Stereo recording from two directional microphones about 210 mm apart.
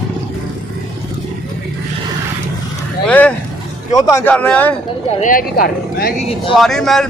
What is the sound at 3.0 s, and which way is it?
Vehicle, 5° left (ahead or behind).